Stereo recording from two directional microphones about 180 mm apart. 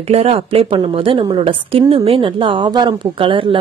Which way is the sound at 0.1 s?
35° right (ahead or behind).